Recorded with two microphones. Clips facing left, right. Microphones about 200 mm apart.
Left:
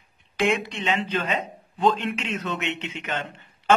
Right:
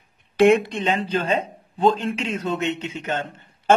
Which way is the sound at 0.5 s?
50° right (ahead or behind).